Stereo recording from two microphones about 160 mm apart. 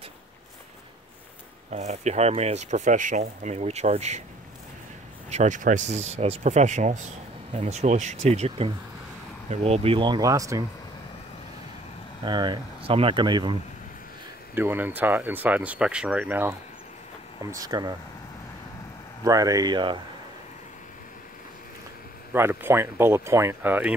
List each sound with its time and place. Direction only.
1.7 s speech: 45° right (ahead or behind)
5.3 s speech: 50° right (ahead or behind); by 10.6 s 20° right (ahead or behind)
12.3 s speech: 30° right (ahead or behind)
14.5 s speech: 10° right (ahead or behind)
17.4 s speech: 20° right (ahead or behind)
19.2 s speech: 20° right (ahead or behind)
22.3 s speech: 15° right (ahead or behind)